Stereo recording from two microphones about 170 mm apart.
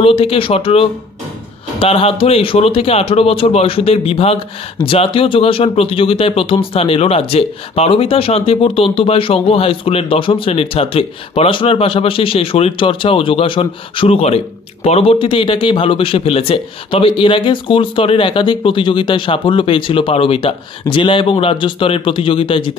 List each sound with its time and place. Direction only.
0.0 s speech: 35° left (ahead or behind)